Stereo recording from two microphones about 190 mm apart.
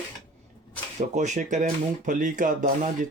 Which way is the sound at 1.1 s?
40° right (ahead or behind).